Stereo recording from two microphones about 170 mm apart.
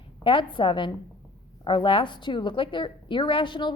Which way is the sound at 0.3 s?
30° left (ahead or behind).